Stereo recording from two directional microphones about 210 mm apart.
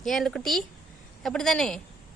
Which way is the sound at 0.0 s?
Centre (ahead or behind).